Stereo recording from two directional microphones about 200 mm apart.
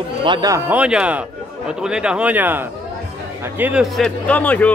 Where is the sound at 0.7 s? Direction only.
5° right (ahead or behind).